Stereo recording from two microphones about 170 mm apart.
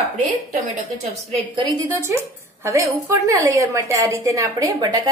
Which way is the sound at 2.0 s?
15° right (ahead or behind).